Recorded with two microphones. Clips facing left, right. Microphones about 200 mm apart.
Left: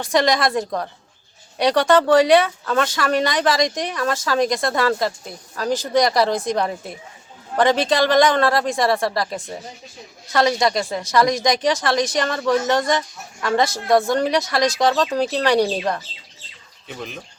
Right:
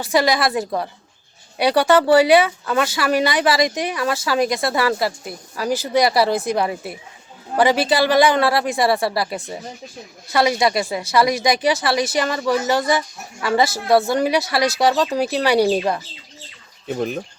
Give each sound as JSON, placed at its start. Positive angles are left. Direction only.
{"t": 0.0, "sound": "a woman's voice", "side_deg": -5}
{"t": 16.9, "sound": "speech", "side_deg": -45}